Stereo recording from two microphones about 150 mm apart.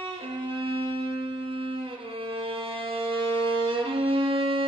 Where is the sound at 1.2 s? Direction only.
35° right (ahead or behind).